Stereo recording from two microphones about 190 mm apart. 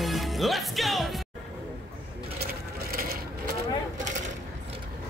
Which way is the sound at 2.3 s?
55° right (ahead or behind).